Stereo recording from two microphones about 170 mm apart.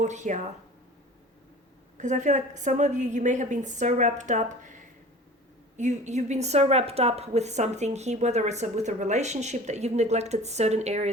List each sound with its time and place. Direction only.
0.0 s a woman's voice: 45° right (ahead or behind)
2.0 s a woman's voice: 45° right (ahead or behind)